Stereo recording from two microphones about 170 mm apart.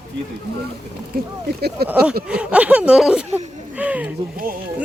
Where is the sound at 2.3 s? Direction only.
5° right (ahead or behind).